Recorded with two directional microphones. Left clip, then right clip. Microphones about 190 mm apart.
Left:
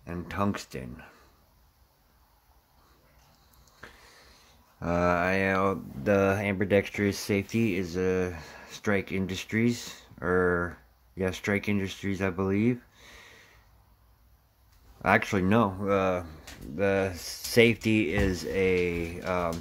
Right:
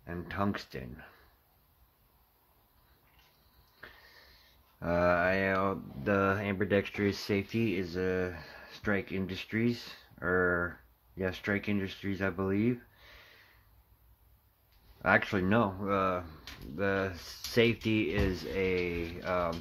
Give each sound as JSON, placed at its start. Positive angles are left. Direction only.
{"t": 0.0, "sound": "speech", "side_deg": 15}
{"t": 3.8, "sound": "a sound", "side_deg": 15}
{"t": 4.7, "sound": "speech", "side_deg": 15}
{"t": 15.0, "sound": "speech", "side_deg": 15}